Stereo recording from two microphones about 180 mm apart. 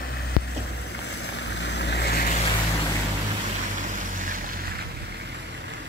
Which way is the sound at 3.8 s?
45° right (ahead or behind).